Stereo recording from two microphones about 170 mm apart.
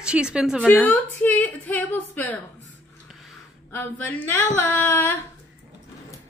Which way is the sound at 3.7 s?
15° left (ahead or behind).